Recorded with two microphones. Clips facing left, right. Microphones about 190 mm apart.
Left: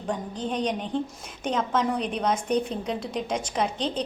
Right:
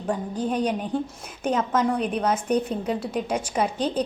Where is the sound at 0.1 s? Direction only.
10° right (ahead or behind).